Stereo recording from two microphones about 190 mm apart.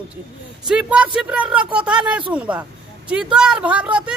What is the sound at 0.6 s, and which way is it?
Speech, 5° right (ahead or behind).